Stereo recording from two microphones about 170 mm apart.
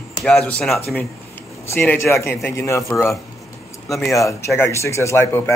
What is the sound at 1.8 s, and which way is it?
Speech, 15° left (ahead or behind).